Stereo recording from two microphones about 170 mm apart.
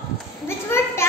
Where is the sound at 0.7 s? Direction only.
15° left (ahead or behind).